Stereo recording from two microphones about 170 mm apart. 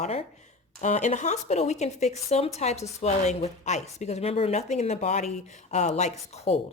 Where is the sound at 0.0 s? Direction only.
40° left (ahead or behind).